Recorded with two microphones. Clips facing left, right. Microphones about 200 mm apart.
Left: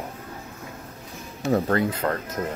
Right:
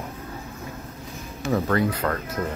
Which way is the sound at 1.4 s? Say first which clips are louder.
Left 1 dB; 35° left (ahead or behind).